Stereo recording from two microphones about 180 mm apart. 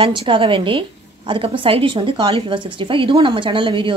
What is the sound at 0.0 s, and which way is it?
A woman's voice, 30° right (ahead or behind).